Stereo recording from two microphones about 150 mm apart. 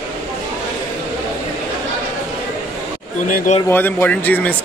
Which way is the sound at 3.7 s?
15° left (ahead or behind).